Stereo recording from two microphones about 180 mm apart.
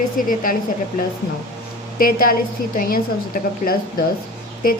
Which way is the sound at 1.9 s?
50° left (ahead or behind).